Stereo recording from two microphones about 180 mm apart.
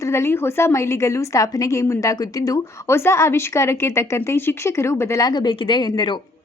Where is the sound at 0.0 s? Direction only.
15° left (ahead or behind).